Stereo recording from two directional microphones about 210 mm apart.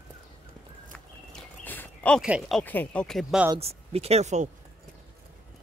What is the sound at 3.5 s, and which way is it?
Speech, 30° right (ahead or behind).